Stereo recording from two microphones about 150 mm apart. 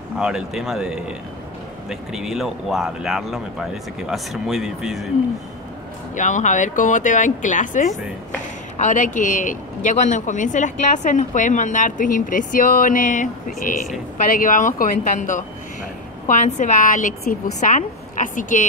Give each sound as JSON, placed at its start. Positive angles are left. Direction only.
{"t": 0.2, "sound": "speech", "side_deg": -5}
{"t": 6.1, "sound": "speech", "side_deg": 55}